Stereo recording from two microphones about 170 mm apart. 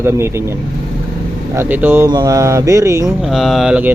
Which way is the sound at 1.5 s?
10° right (ahead or behind).